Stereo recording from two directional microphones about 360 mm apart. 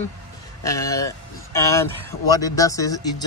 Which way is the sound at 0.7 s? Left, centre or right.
Centre.